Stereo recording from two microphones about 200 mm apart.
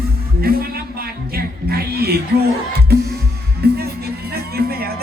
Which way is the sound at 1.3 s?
50° right (ahead or behind).